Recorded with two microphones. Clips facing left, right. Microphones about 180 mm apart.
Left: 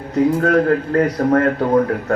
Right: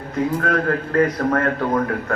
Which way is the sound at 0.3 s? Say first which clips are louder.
Left 6 dB; 30° left (ahead or behind).